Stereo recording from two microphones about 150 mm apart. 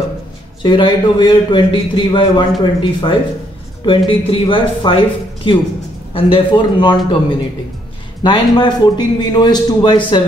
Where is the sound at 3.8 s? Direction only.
35° left (ahead or behind).